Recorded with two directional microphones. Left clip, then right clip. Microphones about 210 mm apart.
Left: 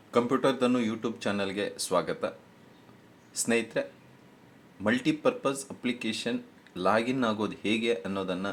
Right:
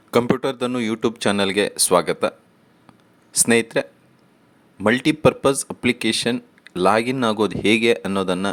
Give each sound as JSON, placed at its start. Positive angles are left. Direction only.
{"t": 0.1, "sound": "speech", "side_deg": -45}
{"t": 3.3, "sound": "speech", "side_deg": -40}